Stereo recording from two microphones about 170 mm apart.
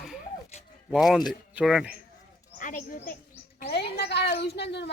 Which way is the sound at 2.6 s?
50° left (ahead or behind).